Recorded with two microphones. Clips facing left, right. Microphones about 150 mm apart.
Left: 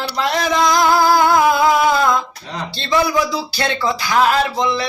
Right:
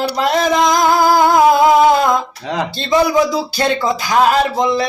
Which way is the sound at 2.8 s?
20° right (ahead or behind).